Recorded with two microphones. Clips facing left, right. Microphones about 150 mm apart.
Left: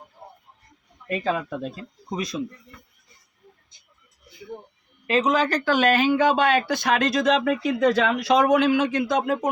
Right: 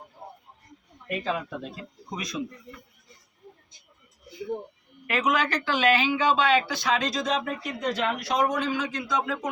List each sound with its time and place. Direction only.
1.2 s speech: 40° left (ahead or behind)
2.1 s speech: 30° left (ahead or behind)
5.0 s speech: 25° left (ahead or behind); by 9.5 s 55° left (ahead or behind)